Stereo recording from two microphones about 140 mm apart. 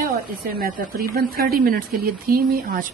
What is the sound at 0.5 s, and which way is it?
Speech, 85° right.